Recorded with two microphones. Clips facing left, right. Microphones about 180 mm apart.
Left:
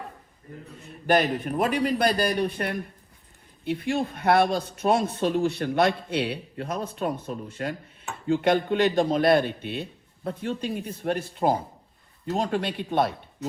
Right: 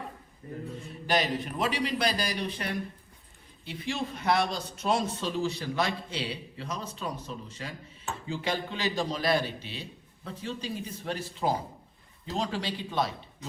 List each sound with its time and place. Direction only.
1.0 s speech: 55° left (ahead or behind)